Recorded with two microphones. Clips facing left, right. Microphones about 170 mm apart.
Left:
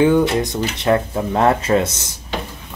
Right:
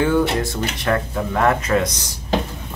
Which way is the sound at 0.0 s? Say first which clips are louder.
Left 4 dB; 20° left (ahead or behind).